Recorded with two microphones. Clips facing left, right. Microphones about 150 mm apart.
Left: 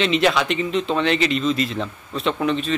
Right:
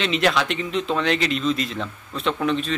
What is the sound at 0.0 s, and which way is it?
Speech, centre (ahead or behind).